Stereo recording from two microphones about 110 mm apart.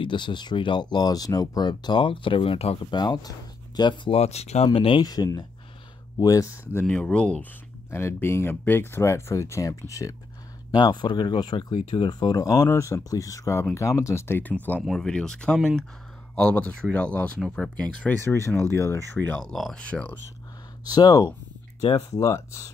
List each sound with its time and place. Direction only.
0.0 s speech: 45° left (ahead or behind)
2.8 s speech: 40° left (ahead or behind)
4.2 s speech: 75° left (ahead or behind)
4.7 s speech: 50° left (ahead or behind)
5.0 s speech: 35° left (ahead or behind)
6.7 s speech: 15° left (ahead or behind)
7.9 s speech: 20° left (ahead or behind)
10.7 s speech: 40° left (ahead or behind); by 14.8 s 15° left (ahead or behind)
14.8 s speech: centre (ahead or behind)
18.2 s speech: 25° left (ahead or behind)
19.4 s speech: 5° left (ahead or behind)
20.9 s speech: 35° left (ahead or behind)